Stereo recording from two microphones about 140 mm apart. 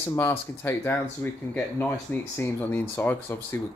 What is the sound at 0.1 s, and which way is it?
Speech, 15° left (ahead or behind).